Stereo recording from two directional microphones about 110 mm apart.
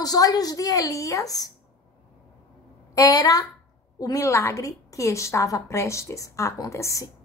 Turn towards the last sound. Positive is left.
turn(degrees=30)  # may be behind; listen again after turning